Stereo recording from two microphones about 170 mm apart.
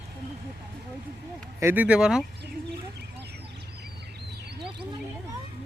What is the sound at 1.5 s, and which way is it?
Speech, 10° right (ahead or behind).